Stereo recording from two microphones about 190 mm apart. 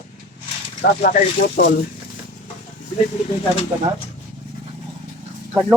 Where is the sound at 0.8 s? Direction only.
45° left (ahead or behind).